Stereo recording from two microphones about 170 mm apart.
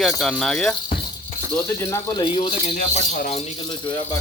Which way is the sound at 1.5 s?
15° left (ahead or behind).